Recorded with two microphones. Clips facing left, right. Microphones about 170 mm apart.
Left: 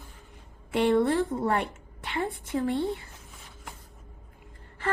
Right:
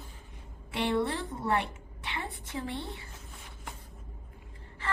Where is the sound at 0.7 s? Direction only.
50° left (ahead or behind).